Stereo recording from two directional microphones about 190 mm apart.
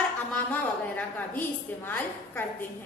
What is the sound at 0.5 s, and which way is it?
A woman's voice, 10° left (ahead or behind).